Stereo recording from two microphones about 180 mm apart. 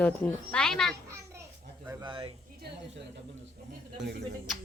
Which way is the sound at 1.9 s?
25° right (ahead or behind).